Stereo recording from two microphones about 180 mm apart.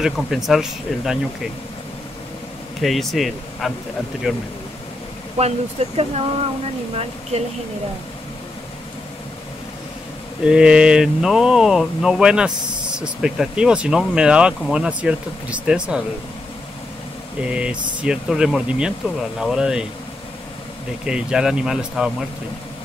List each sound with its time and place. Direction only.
0.0 s speech: centre (ahead or behind)
2.8 s speech: centre (ahead or behind)
5.4 s speech: 35° right (ahead or behind)
10.4 s speech: 5° right (ahead or behind)
17.4 s speech: 5° right (ahead or behind)
21.0 s speech: 5° right (ahead or behind)